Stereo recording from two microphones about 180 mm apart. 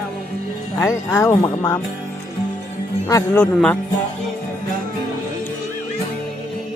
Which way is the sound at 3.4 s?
5° left (ahead or behind).